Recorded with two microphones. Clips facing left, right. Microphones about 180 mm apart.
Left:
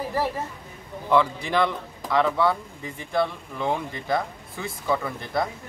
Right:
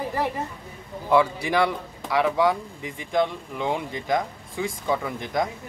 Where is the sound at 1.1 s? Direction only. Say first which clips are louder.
Right 1 dB; 10° right (ahead or behind).